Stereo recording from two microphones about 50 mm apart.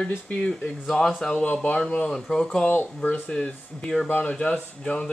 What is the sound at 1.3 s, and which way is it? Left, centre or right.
Speech, left.